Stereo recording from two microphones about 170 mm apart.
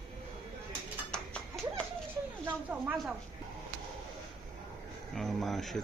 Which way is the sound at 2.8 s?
5° right (ahead or behind).